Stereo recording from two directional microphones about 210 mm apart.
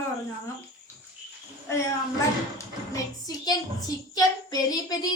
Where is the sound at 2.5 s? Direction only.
15° left (ahead or behind).